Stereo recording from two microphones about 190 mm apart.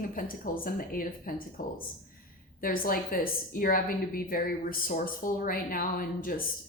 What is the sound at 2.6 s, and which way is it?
A woman's voice, 50° left (ahead or behind).